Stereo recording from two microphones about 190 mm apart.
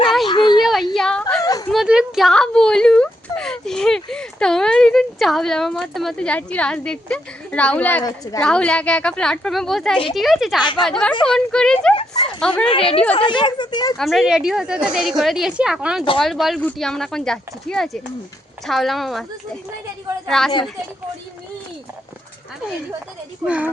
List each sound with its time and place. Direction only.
0.3 s a sound: 25° left (ahead or behind)
0.6 s a sound: centre (ahead or behind)
0.9 s whimper: 5° left (ahead or behind)
1.4 s a sound: 20° left (ahead or behind)
1.7 s a sound: 5° right (ahead or behind)
8.0 s speech: 20° left (ahead or behind)
8.4 s speech: 5° left (ahead or behind)
10.6 s speech: 25° left (ahead or behind)
10.8 s speech: 5° left (ahead or behind)
12.6 s speech: 30° left (ahead or behind)
13.9 s speech: centre (ahead or behind)
20.2 s speech: centre (ahead or behind)
23.5 s speech: 5° right (ahead or behind)